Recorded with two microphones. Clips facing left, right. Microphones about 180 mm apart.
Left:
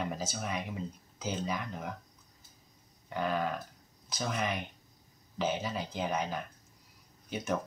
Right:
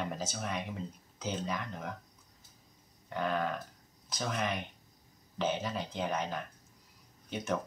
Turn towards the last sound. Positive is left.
turn(degrees=0)  # may be behind; listen again after turning